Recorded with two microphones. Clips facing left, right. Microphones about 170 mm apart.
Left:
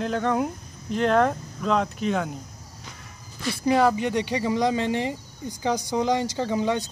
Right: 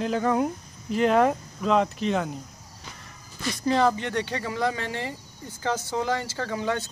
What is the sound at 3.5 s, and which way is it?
Speech, 10° left (ahead or behind).